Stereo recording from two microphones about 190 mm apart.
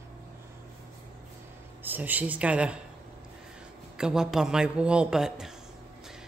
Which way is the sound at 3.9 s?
5° right (ahead or behind).